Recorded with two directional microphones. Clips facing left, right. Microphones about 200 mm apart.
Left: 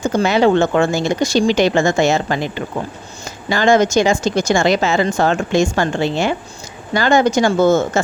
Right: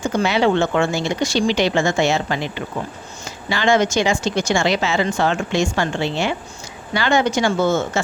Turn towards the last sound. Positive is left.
turn(degrees=40)  # may be behind; listen again after turning